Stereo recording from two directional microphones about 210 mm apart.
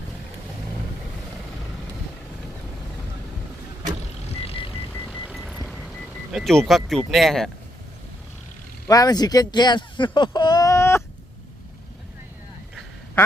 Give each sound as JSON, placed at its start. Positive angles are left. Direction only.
{"t": 4.4, "sound": "vehicle", "side_deg": 25}
{"t": 4.9, "sound": "vehicle", "side_deg": 5}
{"t": 6.3, "sound": "speech", "side_deg": 0}
{"t": 8.9, "sound": "speech", "side_deg": 15}